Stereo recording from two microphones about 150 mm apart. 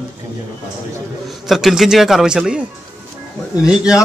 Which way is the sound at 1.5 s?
Centre (ahead or behind).